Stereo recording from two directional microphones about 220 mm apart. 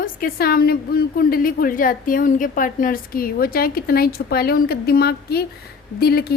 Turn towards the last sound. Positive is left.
turn(degrees=45)  # may be behind; listen again after turning